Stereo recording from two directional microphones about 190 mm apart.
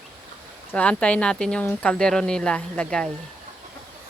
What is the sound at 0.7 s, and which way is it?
Speech, 5° left (ahead or behind).